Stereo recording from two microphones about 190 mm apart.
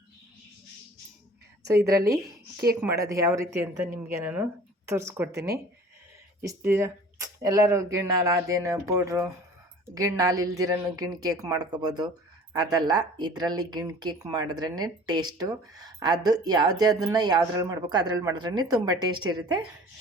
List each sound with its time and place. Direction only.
1.6 s speech: 15° right (ahead or behind)